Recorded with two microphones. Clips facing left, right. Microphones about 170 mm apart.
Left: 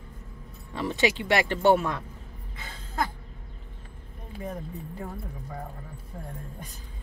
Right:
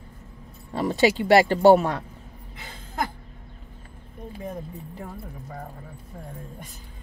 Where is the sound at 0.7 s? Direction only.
40° right (ahead or behind).